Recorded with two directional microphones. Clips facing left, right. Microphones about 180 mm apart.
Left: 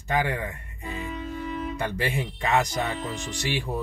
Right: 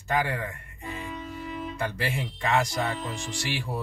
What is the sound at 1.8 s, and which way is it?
Speech, 20° left (ahead or behind).